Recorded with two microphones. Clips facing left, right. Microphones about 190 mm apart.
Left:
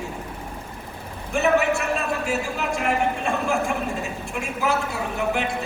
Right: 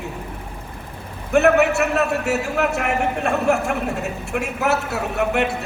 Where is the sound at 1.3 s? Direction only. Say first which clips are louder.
Right 5 dB; 65° right (ahead or behind).